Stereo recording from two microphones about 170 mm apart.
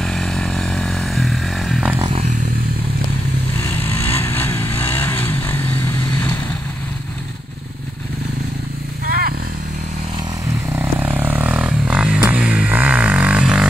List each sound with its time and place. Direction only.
0.0 s vehicle: 5° left (ahead or behind)
2.0 s a sound: 40° right (ahead or behind)
3.6 s vehicle: 15° left (ahead or behind)
9.0 s vehicle: 60° right (ahead or behind)
10.7 s vehicle: 10° right (ahead or behind)